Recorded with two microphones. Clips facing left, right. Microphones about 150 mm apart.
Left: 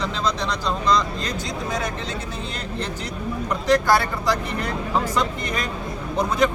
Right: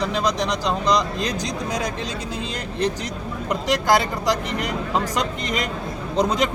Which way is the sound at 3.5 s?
15° right (ahead or behind).